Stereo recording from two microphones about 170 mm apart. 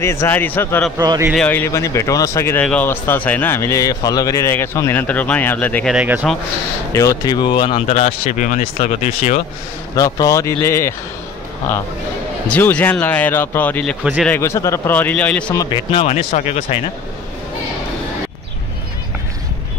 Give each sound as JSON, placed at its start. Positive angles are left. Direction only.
{"t": 0.0, "sound": "speech", "side_deg": 15}
{"t": 0.9, "sound": "speech", "side_deg": -20}
{"t": 1.3, "sound": "speech", "side_deg": 10}
{"t": 5.9, "sound": "speech", "side_deg": -10}
{"t": 6.9, "sound": "speech", "side_deg": 20}
{"t": 9.9, "sound": "speech", "side_deg": 20}
{"t": 12.4, "sound": "speech", "side_deg": 10}
{"t": 14.0, "sound": "speech", "side_deg": 0}
{"t": 14.3, "sound": "speech", "side_deg": 15}
{"t": 15.5, "sound": "speech", "side_deg": 20}
{"t": 15.9, "sound": "speech", "side_deg": 35}